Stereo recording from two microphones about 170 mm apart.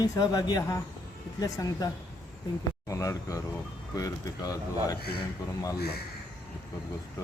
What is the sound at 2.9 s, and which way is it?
Speech, 20° left (ahead or behind).